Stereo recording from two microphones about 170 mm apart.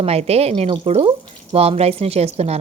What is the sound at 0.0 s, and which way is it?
A woman's voice, 35° right (ahead or behind).